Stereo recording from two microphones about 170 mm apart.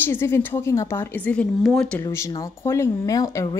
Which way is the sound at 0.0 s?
15° left (ahead or behind).